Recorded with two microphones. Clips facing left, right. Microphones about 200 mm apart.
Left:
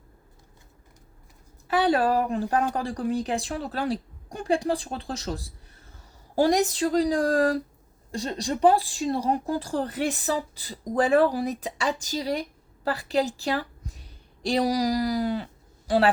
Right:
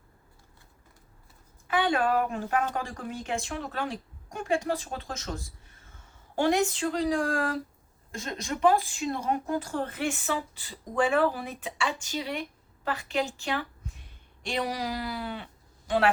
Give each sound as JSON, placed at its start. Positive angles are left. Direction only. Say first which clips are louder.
{"t": 1.6, "sound": "a woman's voice", "louder": "left 4 dB", "side_deg": 35}